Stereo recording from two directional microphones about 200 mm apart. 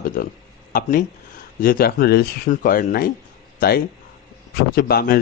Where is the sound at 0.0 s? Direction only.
45° left (ahead or behind).